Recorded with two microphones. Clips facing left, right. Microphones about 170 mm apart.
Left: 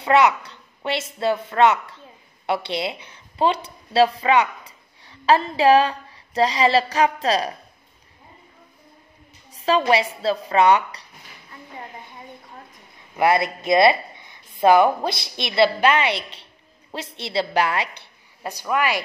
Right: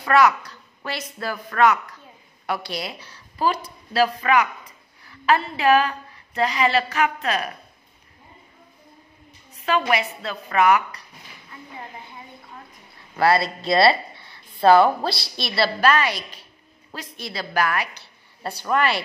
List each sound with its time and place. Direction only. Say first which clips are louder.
0.0 s a woman's voice: left 1 dB; 20° left (ahead or behind)
9.6 s a woman's voice: left 3 dB; 30° left (ahead or behind)
13.1 s a woman's voice: even; 20° left (ahead or behind)
18.4 s a woman's voice: right 1 dB; 10° left (ahead or behind)